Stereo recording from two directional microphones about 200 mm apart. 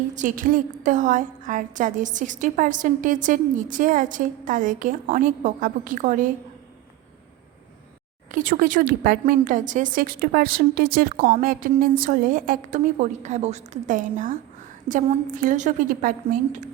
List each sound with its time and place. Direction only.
0.1 s a woman's voice: 40° right (ahead or behind)
8.3 s a woman's voice: 40° right (ahead or behind)